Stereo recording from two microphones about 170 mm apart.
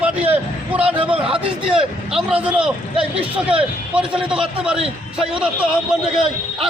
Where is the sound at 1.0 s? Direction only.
35° right (ahead or behind).